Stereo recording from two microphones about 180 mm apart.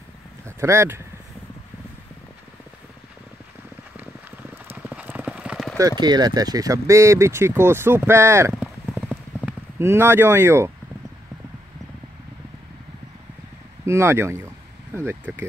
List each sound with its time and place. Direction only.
0.5 s speech: 15° right (ahead or behind)
4.6 s clip-clop: 10° right (ahead or behind)
5.8 s speech: 20° right (ahead or behind)
8.5 s clip-clop: 5° left (ahead or behind)
9.5 s speech: 15° right (ahead or behind)
13.8 s speech: 15° right (ahead or behind)